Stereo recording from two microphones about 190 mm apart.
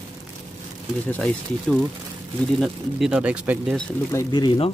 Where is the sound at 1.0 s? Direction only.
5° left (ahead or behind).